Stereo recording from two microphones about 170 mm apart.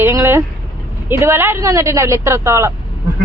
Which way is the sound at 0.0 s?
15° right (ahead or behind).